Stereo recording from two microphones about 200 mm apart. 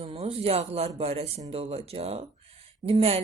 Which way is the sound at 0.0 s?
30° right (ahead or behind).